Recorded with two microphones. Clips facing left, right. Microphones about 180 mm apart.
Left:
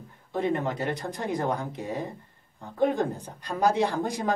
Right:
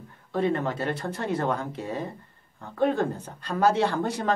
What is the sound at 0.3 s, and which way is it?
Speech, 15° left (ahead or behind).